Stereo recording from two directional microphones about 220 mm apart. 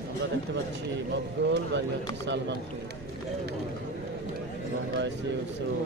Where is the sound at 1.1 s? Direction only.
55° right (ahead or behind).